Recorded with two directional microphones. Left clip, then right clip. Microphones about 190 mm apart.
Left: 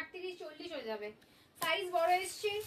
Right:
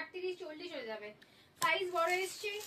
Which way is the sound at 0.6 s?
25° left (ahead or behind).